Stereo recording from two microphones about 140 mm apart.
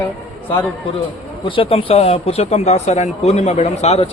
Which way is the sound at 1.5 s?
40° left (ahead or behind).